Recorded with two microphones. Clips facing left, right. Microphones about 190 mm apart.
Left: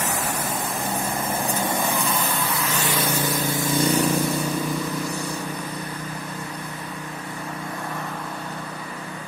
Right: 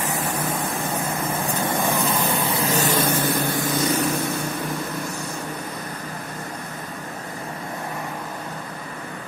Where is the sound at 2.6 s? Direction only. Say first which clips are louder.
Right 6 dB; 40° right (ahead or behind); by 3.7 s 55° right (ahead or behind).